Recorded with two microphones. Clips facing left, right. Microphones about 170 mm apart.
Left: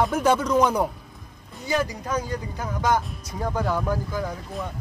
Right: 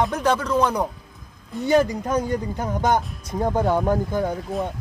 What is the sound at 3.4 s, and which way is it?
Speech, 25° right (ahead or behind).